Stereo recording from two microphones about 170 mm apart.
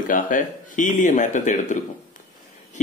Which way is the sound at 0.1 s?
50° left (ahead or behind).